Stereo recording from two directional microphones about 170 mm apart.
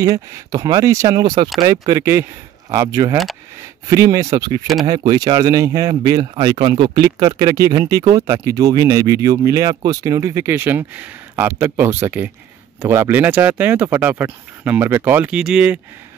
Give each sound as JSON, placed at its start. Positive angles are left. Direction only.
{"t": 0.0, "sound": "speech", "side_deg": -20}